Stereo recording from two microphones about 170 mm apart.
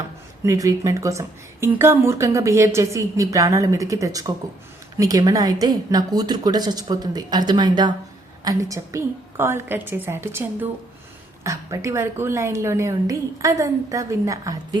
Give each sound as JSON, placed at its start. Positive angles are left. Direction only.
{"t": 0.4, "sound": "a woman's voice", "side_deg": -20}